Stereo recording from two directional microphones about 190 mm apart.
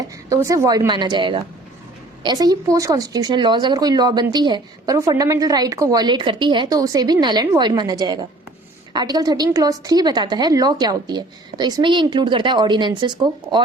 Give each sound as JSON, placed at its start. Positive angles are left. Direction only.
{"t": 0.3, "sound": "a woman's voice", "side_deg": -15}